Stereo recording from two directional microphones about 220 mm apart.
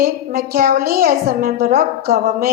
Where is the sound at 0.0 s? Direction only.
40° right (ahead or behind).